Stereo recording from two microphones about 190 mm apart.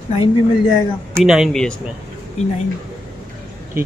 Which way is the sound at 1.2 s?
Centre (ahead or behind).